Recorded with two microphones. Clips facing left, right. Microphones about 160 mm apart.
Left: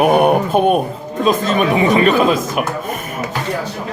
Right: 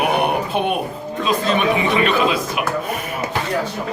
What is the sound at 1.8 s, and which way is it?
Speech, 40° left (ahead or behind).